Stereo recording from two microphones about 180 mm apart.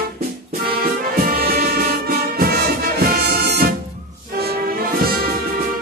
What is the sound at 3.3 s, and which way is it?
Music, 65° right (ahead or behind).